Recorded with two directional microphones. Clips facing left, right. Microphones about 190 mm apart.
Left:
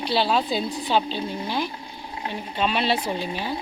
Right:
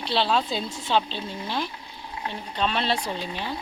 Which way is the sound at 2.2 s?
25° left (ahead or behind).